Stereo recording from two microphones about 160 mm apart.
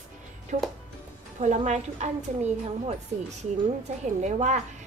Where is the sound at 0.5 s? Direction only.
50° right (ahead or behind).